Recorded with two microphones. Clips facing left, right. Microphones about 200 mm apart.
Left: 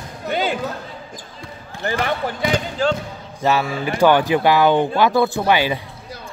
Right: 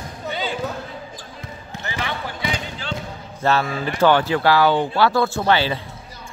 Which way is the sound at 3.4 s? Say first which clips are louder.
Left 1 dB; 10° left (ahead or behind).